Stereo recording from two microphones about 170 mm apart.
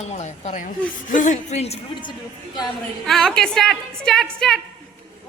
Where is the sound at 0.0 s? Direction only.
40° left (ahead or behind).